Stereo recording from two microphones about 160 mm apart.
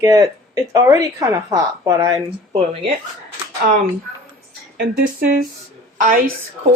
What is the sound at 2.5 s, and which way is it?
Speech, 40° right (ahead or behind).